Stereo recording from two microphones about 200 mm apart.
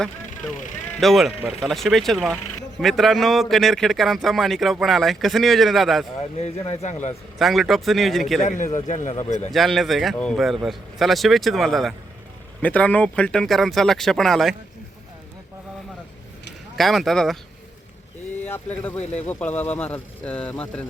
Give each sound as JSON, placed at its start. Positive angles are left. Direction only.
{"t": 0.5, "sound": "speech", "side_deg": 40}
{"t": 0.9, "sound": "speech", "side_deg": 0}
{"t": 6.4, "sound": "speech", "side_deg": 35}
{"t": 7.3, "sound": "speech", "side_deg": 0}
{"t": 8.4, "sound": "speech", "side_deg": 40}
{"t": 9.5, "sound": "speech", "side_deg": 0}
{"t": 16.7, "sound": "speech", "side_deg": 0}
{"t": 18.4, "sound": "speech", "side_deg": 10}
{"t": 18.9, "sound": "speech", "side_deg": 35}
{"t": 19.3, "sound": "speech", "side_deg": 10}